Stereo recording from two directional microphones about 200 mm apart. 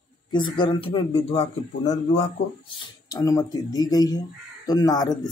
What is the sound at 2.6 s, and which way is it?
Speech, 20° left (ahead or behind).